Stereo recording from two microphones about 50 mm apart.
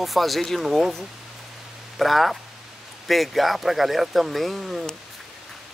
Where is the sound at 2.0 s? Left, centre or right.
Centre.